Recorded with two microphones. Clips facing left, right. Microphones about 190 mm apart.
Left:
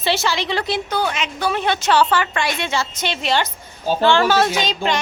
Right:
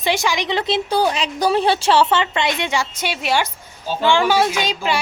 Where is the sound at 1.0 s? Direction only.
35° right (ahead or behind).